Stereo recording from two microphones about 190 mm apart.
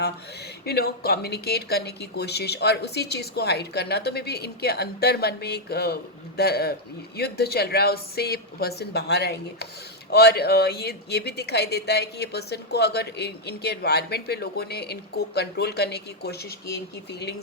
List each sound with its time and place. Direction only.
0.6 s speech: 55° left (ahead or behind)